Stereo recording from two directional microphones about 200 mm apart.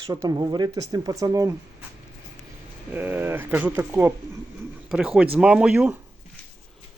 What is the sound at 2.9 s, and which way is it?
Speech, 10° right (ahead or behind).